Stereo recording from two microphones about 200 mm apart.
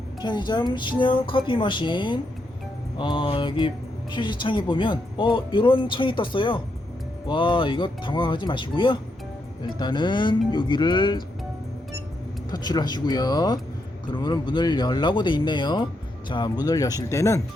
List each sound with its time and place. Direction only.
0.2 s speech: 20° left (ahead or behind)
12.5 s speech: 20° left (ahead or behind)